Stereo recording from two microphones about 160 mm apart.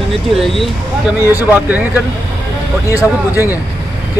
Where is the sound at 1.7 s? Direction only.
10° right (ahead or behind).